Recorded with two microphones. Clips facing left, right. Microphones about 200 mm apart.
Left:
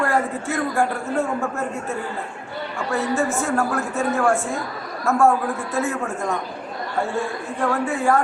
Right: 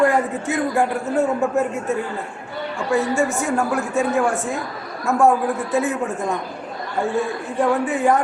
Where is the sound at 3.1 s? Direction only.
15° right (ahead or behind).